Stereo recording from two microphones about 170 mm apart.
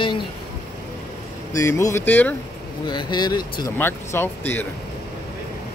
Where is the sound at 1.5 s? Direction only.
20° left (ahead or behind).